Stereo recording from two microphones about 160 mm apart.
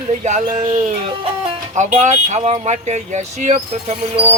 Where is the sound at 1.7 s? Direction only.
50° right (ahead or behind).